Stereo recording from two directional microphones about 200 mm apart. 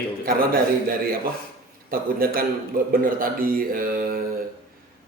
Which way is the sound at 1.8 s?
45° right (ahead or behind).